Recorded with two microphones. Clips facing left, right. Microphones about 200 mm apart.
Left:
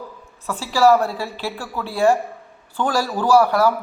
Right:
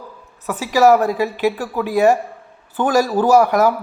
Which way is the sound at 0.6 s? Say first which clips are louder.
Right 3 dB; 15° right (ahead or behind).